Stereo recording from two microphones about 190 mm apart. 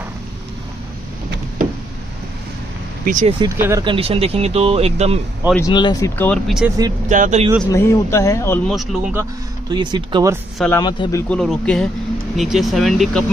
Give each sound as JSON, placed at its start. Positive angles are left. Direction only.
{"t": 3.1, "sound": "speech", "side_deg": -40}
{"t": 3.3, "sound": "speech", "side_deg": -15}
{"t": 3.8, "sound": "speech", "side_deg": -30}
{"t": 5.6, "sound": "speech", "side_deg": 20}
{"t": 7.1, "sound": "speech", "side_deg": -40}
{"t": 7.6, "sound": "speech", "side_deg": 15}
{"t": 8.6, "sound": "speech", "side_deg": 0}
{"t": 9.7, "sound": "speech", "side_deg": -20}
{"t": 10.8, "sound": "speech", "side_deg": 20}
{"t": 11.2, "sound": "speech", "side_deg": 5}